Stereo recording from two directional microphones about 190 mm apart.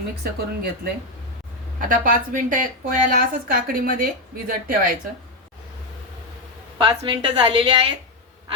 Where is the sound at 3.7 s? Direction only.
50° right (ahead or behind).